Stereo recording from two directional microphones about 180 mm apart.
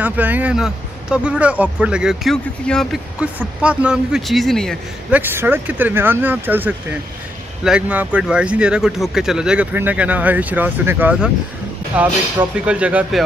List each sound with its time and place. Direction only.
0.0 s speech: 10° right (ahead or behind)
5.1 s speech: 10° right (ahead or behind)